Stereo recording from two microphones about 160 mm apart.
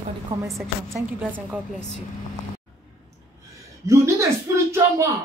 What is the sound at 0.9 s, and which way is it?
Speech, 10° right (ahead or behind).